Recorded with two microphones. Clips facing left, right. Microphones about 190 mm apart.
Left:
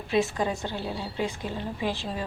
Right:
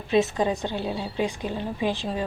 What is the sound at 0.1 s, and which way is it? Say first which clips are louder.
A woman's voice: right 4 dB; 20° right (ahead or behind).